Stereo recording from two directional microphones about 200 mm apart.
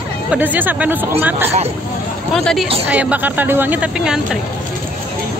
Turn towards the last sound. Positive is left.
turn(degrees=-5)  # may be behind; listen again after turning